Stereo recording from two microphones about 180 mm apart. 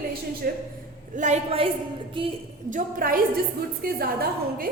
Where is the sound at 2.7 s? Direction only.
50° right (ahead or behind).